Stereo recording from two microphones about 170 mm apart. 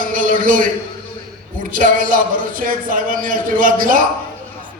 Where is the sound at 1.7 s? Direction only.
55° right (ahead or behind).